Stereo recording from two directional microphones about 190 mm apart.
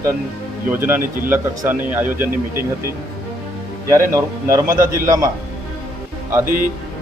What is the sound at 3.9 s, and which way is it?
Speech, 15° right (ahead or behind).